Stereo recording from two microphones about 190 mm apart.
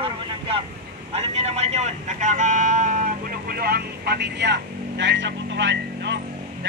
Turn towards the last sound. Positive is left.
turn(degrees=-65)  # may be behind; listen again after turning